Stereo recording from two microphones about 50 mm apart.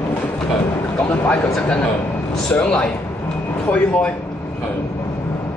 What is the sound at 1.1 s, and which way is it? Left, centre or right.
Speech, centre.